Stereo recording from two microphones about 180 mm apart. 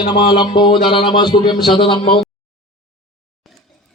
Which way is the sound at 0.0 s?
25° left (ahead or behind).